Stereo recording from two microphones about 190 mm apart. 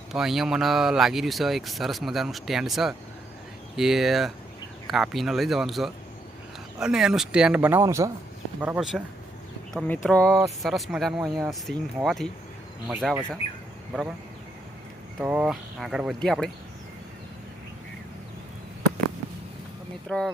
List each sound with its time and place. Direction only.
0.1 s a man's voice: centre (ahead or behind)
8.6 s speech: 5° right (ahead or behind)
9.7 s speech: 10° left (ahead or behind)
10.2 s a man's voice: 15° right (ahead or behind)
10.6 s speech: centre (ahead or behind)
15.2 s speech: 5° right (ahead or behind)
20.1 s speech: 5° left (ahead or behind)